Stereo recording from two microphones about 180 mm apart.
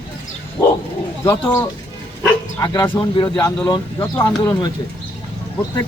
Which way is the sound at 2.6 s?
25° left (ahead or behind).